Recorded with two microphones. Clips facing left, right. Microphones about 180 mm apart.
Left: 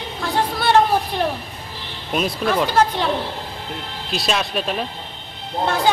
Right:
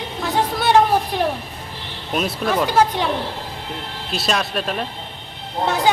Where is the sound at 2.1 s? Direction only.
Centre (ahead or behind).